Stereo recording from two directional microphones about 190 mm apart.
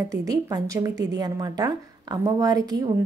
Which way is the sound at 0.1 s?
20° right (ahead or behind).